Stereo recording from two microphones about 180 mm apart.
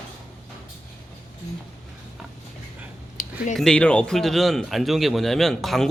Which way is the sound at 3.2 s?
50° left (ahead or behind).